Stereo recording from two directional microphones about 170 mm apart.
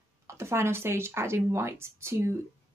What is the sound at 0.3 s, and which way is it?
Speech, 15° right (ahead or behind).